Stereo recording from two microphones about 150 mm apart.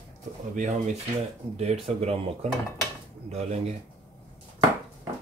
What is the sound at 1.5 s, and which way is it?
Speech, 45° right (ahead or behind).